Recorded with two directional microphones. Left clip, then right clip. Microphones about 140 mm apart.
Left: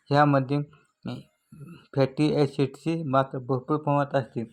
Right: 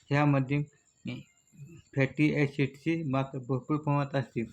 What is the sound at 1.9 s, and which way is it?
Speech, 20° left (ahead or behind).